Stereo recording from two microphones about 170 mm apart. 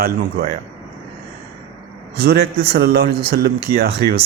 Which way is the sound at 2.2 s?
65° right (ahead or behind).